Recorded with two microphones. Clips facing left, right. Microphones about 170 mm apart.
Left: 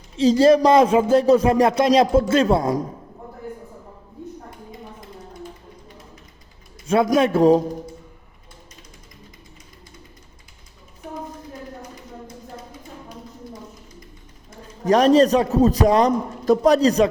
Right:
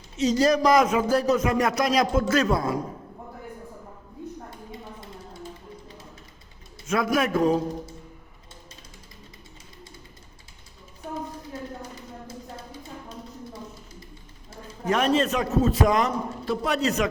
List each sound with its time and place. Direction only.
0.2 s speech: 30° left (ahead or behind)
6.8 s speech: 30° left (ahead or behind)
14.8 s a man's voice: 35° left (ahead or behind)